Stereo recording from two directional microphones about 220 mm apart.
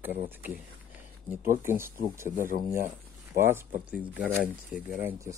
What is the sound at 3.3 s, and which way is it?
Speech, 10° right (ahead or behind).